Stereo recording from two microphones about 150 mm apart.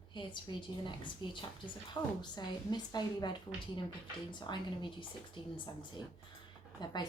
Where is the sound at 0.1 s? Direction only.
30° left (ahead or behind).